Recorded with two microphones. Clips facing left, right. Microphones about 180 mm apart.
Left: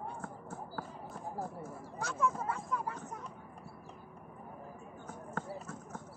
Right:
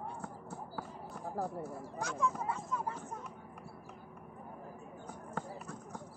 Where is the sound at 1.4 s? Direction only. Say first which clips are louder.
Right 6 dB; 35° right (ahead or behind).